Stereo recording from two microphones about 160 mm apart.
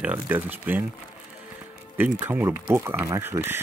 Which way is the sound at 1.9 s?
15° right (ahead or behind).